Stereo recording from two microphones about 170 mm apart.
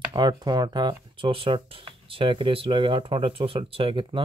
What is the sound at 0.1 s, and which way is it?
Speech, 25° right (ahead or behind).